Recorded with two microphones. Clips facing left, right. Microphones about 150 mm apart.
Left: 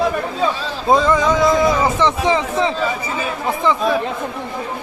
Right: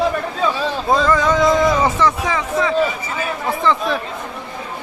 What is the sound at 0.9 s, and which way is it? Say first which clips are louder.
Speech: left 2 dB; 15° left (ahead or behind).